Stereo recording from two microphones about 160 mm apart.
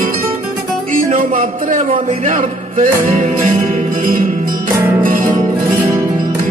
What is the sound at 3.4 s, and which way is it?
Music, 55° right (ahead or behind).